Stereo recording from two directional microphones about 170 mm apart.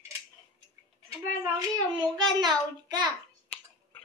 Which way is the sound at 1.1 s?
20° right (ahead or behind).